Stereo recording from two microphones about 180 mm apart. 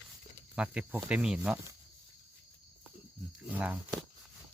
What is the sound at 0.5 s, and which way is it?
Speech, 5° right (ahead or behind).